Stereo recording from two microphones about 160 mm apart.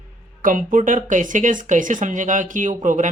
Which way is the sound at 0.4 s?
55° right (ahead or behind).